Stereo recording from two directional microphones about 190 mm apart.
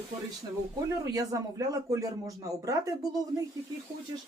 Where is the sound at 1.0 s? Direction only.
20° right (ahead or behind).